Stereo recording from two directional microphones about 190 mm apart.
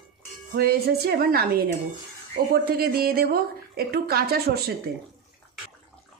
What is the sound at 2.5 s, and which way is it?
A woman's voice, 55° right (ahead or behind).